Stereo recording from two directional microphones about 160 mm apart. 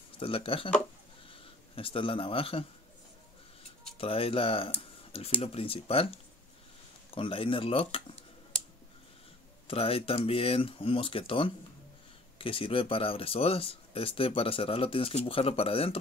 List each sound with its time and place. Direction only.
0.2 s speech: 35° left (ahead or behind)
4.0 s speech: 35° left (ahead or behind)
7.2 s speech: 35° left (ahead or behind)
9.7 s speech: 35° left (ahead or behind)